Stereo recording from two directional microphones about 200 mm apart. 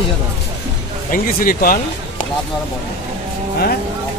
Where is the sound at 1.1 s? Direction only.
45° left (ahead or behind).